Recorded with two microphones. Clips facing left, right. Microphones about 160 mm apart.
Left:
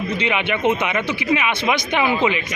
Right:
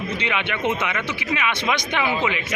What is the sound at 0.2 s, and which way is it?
Speech, 15° left (ahead or behind).